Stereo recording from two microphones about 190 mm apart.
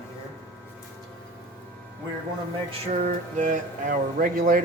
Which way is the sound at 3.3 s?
40° right (ahead or behind).